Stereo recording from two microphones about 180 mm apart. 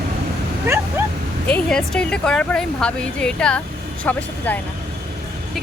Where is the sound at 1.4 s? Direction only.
5° left (ahead or behind).